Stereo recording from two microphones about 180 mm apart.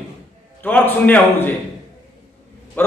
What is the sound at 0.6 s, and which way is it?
Speech, 10° left (ahead or behind).